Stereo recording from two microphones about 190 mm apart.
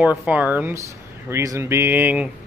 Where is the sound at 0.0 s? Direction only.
10° right (ahead or behind).